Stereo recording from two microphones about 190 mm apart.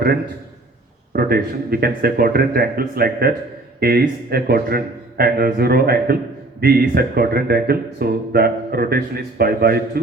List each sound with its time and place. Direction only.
1.1 s speech: 55° right (ahead or behind)